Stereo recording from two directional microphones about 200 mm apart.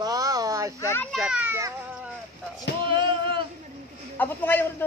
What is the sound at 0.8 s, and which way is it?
Speech, 10° left (ahead or behind).